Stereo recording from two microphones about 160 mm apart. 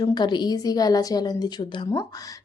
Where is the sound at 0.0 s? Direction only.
25° left (ahead or behind).